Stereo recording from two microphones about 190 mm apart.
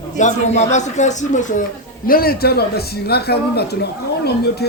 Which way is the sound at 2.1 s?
50° left (ahead or behind).